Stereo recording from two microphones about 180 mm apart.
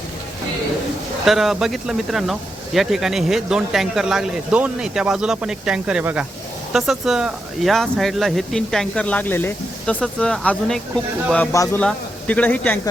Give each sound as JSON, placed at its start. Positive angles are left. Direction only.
{"t": 1.2, "sound": "speech", "side_deg": 0}
{"t": 11.5, "sound": "speech", "side_deg": 15}
{"t": 11.8, "sound": "speech", "side_deg": 5}